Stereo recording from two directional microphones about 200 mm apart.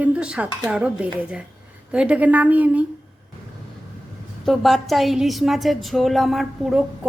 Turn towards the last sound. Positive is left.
turn(degrees=0)  # may be behind; listen again after turning